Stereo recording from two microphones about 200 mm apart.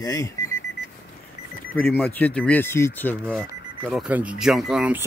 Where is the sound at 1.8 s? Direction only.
10° left (ahead or behind).